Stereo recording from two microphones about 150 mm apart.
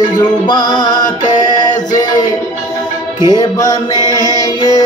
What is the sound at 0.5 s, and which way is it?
Music, 30° left (ahead or behind).